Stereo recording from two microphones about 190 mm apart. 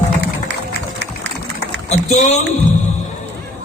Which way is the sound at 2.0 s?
35° left (ahead or behind).